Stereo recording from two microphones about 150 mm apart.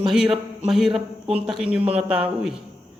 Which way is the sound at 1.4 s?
5° right (ahead or behind).